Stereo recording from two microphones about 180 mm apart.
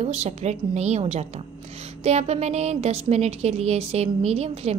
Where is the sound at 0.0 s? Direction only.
35° right (ahead or behind).